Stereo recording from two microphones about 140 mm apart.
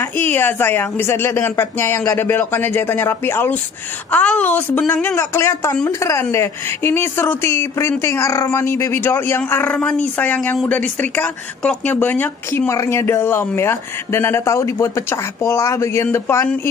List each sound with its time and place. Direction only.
0.0 s speech: 15° left (ahead or behind)